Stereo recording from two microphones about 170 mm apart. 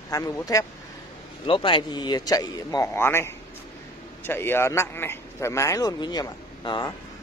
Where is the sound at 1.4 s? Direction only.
30° left (ahead or behind).